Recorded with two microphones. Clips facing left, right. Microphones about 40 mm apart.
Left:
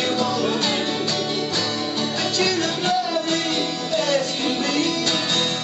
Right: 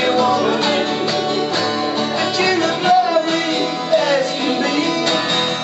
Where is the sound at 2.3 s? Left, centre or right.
Centre.